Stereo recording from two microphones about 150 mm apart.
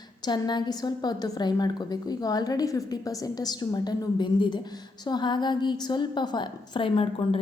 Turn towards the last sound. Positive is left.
turn(degrees=35)  # may be behind; listen again after turning